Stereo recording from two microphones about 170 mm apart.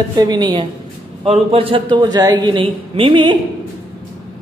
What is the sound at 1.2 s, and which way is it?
A man's voice, 35° right (ahead or behind).